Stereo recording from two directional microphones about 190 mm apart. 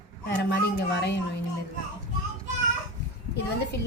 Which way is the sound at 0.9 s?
60° left (ahead or behind).